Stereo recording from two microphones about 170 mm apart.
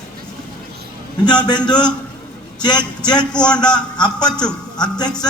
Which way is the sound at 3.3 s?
5° left (ahead or behind).